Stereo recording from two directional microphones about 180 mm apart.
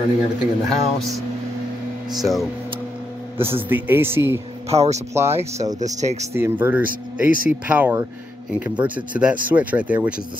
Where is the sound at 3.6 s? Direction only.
10° right (ahead or behind).